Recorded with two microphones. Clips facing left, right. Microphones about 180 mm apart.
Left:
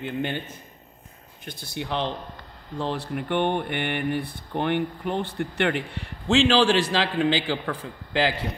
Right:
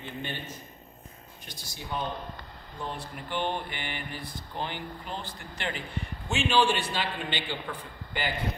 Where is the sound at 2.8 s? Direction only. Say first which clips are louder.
Left 9 dB; 75° left (ahead or behind).